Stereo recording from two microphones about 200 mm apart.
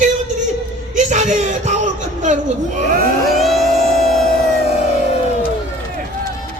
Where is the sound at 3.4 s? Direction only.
Centre (ahead or behind).